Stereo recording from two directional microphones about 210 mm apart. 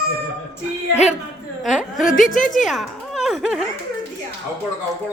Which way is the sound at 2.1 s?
40° left (ahead or behind).